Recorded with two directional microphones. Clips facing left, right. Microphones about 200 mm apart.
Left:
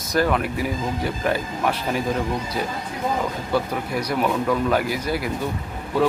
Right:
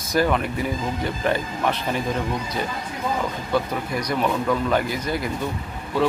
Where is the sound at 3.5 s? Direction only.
5° left (ahead or behind).